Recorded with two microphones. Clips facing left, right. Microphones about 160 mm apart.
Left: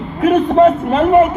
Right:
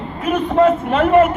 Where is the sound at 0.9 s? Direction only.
25° left (ahead or behind).